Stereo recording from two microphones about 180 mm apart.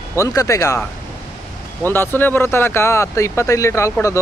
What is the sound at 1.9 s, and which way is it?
Speech, 10° left (ahead or behind).